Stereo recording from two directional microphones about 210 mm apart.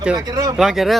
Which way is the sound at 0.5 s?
Centre (ahead or behind).